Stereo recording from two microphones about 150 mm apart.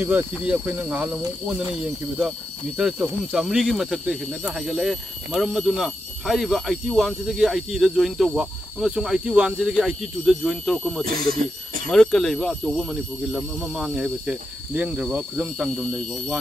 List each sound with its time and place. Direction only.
0.0 s speech: 10° right (ahead or behind)
2.8 s speech: 5° right (ahead or behind)
11.1 s speech: 85° right
11.9 s speech: 5° left (ahead or behind)